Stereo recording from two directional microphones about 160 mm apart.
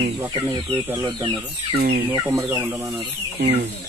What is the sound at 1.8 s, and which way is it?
Speech, 65° right (ahead or behind).